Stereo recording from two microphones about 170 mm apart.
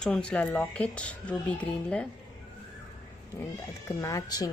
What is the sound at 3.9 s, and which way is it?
Speech, 20° left (ahead or behind).